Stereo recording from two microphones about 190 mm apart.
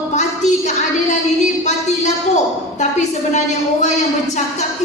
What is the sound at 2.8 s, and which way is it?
A woman's voice, 40° left (ahead or behind).